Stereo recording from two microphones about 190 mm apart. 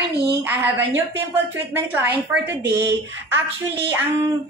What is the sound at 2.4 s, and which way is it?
Speech, 65° right (ahead or behind).